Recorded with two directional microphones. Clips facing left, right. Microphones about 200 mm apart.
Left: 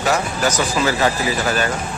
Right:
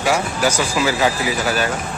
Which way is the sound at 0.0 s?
10° right (ahead or behind).